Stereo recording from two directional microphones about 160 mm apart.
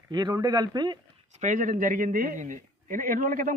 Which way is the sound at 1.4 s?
50° right (ahead or behind).